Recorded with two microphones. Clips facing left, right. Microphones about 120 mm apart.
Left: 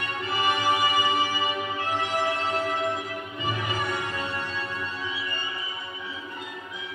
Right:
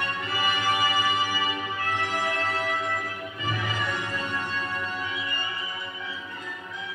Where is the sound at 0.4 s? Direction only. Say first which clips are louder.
Left 2 dB; 20° left (ahead or behind).